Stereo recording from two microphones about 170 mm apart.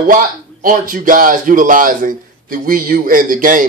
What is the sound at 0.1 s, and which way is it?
Speech, 55° right (ahead or behind).